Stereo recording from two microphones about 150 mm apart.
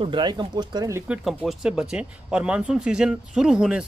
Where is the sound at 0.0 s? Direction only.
30° right (ahead or behind).